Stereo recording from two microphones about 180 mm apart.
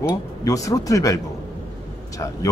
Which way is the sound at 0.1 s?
20° left (ahead or behind).